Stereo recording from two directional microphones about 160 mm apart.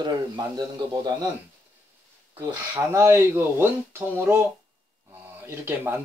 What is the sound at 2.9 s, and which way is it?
A man's voice, 15° right (ahead or behind).